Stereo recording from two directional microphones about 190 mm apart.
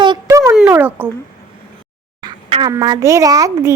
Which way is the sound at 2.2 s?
25° right (ahead or behind).